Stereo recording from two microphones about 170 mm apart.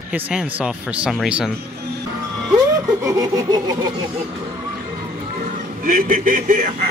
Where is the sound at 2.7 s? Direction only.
20° right (ahead or behind).